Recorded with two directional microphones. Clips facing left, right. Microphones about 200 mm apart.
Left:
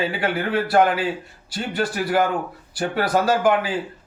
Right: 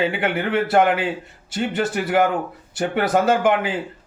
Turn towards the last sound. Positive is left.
turn(degrees=-20)  # may be behind; listen again after turning